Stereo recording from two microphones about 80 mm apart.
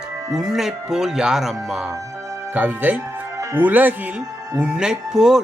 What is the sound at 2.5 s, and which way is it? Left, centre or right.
Speech, right.